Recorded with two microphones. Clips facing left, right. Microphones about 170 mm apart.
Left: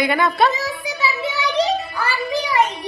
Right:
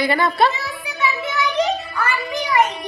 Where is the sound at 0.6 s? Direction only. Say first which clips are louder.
Left 4 dB; 40° left (ahead or behind).